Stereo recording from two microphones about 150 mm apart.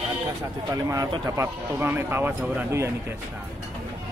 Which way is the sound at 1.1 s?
20° right (ahead or behind).